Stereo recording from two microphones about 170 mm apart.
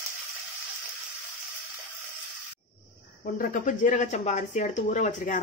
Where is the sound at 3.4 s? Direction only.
45° left (ahead or behind).